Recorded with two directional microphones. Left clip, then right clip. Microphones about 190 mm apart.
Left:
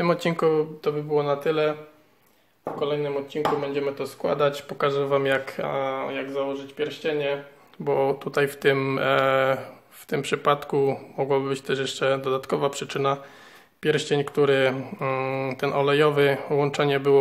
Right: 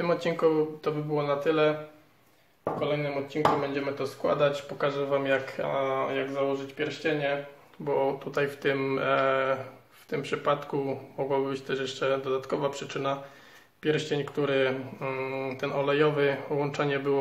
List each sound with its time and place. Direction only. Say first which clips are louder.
0.0 s speech: left 3 dB; 50° left (ahead or behind)
3.3 s speech: even; 35° left (ahead or behind)
7.8 s speech: left 4 dB; 50° left (ahead or behind)